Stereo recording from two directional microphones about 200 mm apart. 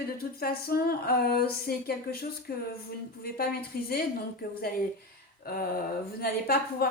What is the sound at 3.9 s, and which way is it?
Speech, 50° left (ahead or behind).